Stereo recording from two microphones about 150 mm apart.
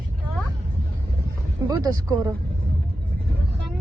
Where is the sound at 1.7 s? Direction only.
20° right (ahead or behind).